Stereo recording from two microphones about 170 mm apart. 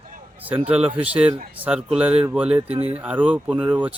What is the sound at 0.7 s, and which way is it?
Speech, 5° right (ahead or behind).